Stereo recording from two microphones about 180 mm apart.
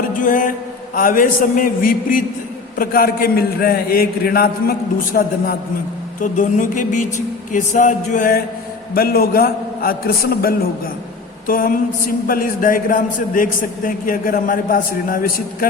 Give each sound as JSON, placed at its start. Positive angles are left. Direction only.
{"t": 0.1, "sound": "a man's voice", "side_deg": 45}
{"t": 11.4, "sound": "speech", "side_deg": 50}